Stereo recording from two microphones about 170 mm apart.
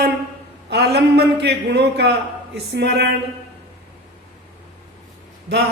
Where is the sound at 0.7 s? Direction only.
75° right (ahead or behind).